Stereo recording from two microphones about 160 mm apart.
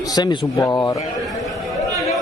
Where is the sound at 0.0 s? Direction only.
25° left (ahead or behind).